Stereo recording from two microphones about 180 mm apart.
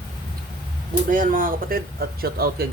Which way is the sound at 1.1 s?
50° right (ahead or behind).